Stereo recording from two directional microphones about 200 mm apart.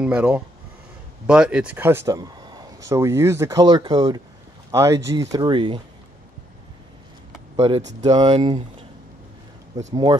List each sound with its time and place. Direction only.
0.0 s speech: 5° right (ahead or behind); by 5.8 s 25° right (ahead or behind)
7.5 s speech: 30° right (ahead or behind)
8.3 s speech: 30° right (ahead or behind)
9.8 s speech: 20° right (ahead or behind)